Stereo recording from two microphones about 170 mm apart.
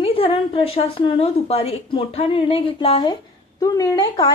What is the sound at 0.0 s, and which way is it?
A woman's voice, 35° left (ahead or behind).